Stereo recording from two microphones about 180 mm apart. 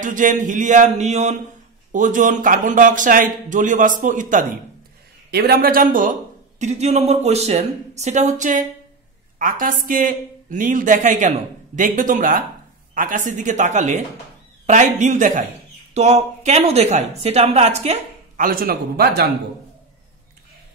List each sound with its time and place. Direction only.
0.0 s speech: 45° right (ahead or behind)
5.3 s a woman's voice: 55° right (ahead or behind)